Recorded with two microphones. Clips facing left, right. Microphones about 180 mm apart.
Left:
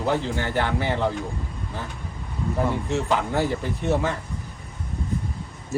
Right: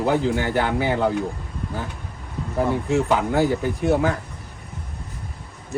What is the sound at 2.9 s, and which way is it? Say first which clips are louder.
Speech: right 5 dB; 15° right (ahead or behind).